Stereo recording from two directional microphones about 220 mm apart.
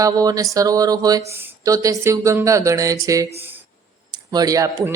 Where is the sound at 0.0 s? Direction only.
15° right (ahead or behind).